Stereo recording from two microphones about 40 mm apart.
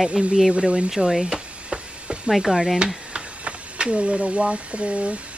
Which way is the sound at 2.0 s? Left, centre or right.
Right.